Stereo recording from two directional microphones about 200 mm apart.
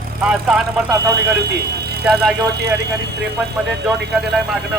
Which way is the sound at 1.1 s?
55° right (ahead or behind).